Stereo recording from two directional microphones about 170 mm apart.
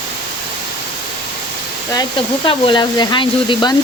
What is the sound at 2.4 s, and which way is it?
Speech, 30° left (ahead or behind).